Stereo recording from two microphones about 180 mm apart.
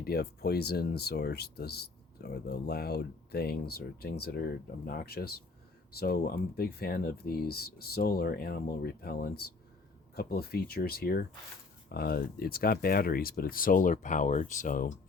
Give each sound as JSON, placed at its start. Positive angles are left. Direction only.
{"t": 0.0, "sound": "speech", "side_deg": 60}